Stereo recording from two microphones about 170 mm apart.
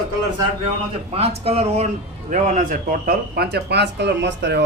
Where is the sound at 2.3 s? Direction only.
50° right (ahead or behind).